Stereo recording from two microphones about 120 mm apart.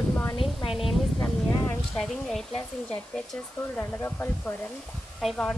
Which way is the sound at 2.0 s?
Centre (ahead or behind).